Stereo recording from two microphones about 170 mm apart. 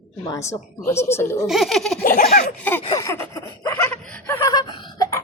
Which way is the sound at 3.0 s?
15° left (ahead or behind).